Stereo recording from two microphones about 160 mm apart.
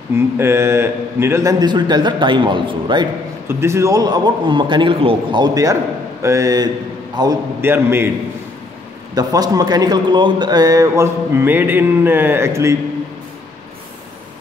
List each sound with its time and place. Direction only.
0.1 s a man's voice: 15° right (ahead or behind)
3.4 s a man's voice: 15° right (ahead or behind)
9.1 s a man's voice: 25° right (ahead or behind)